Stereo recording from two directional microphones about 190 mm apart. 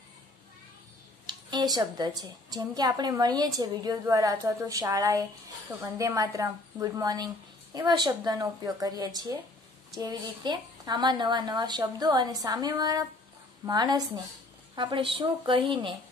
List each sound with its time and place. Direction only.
1.2 s a woman's voice: 20° right (ahead or behind)